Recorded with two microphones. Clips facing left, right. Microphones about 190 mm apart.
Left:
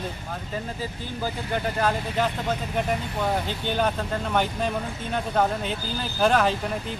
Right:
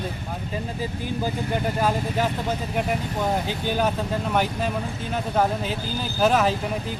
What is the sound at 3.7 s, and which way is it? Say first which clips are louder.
Speech: right 1 dB; 5° right (ahead or behind).